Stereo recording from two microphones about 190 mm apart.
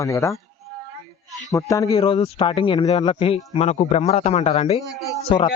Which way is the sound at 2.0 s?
30° left (ahead or behind).